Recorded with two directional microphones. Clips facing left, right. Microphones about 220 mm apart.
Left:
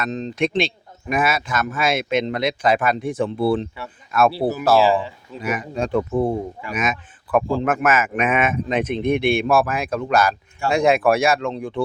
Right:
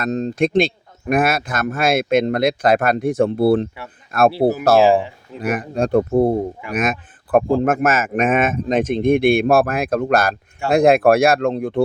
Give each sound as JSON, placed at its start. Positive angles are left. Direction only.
{"t": 0.0, "sound": "a man's voice", "side_deg": -45}
{"t": 5.4, "sound": "a man's voice", "side_deg": -55}
{"t": 6.0, "sound": "speech", "side_deg": -40}
{"t": 6.7, "sound": "a man's voice", "side_deg": -55}